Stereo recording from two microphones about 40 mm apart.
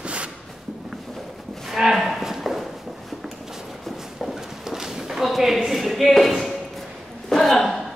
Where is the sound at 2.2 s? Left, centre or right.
Centre.